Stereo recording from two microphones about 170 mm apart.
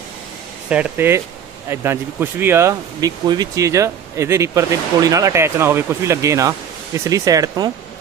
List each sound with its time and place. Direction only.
0.7 s speech: 10° right (ahead or behind)